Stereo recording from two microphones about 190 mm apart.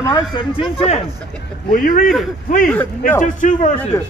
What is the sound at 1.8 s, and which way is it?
Speech, 45° left (ahead or behind).